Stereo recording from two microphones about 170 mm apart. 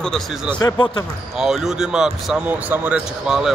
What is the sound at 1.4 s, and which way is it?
Speech, centre (ahead or behind).